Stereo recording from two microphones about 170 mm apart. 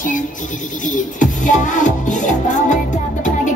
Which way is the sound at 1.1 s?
50° left (ahead or behind).